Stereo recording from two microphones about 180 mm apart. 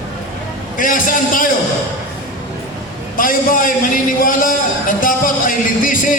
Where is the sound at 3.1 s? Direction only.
50° left (ahead or behind).